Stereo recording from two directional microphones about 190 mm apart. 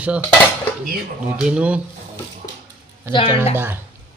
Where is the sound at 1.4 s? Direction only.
5° right (ahead or behind).